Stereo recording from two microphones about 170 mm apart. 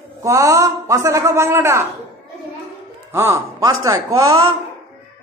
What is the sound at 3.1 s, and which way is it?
A man's voice, 15° right (ahead or behind).